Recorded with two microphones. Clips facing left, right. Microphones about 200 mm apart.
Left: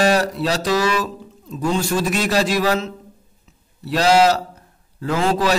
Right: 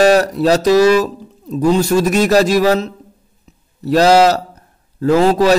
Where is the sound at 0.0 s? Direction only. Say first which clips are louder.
Right 6 dB; 45° right (ahead or behind).